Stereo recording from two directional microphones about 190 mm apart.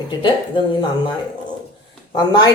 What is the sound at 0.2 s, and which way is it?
Speech, 25° left (ahead or behind).